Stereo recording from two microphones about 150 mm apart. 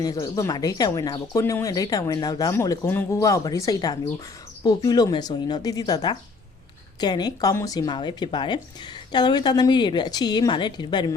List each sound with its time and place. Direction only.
0.0 s speech: 25° left (ahead or behind)